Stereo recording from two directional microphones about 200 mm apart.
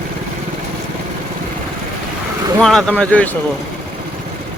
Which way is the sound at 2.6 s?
Centre (ahead or behind).